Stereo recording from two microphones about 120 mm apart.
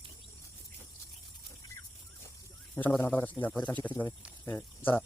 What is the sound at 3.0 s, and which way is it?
Speech, 15° left (ahead or behind).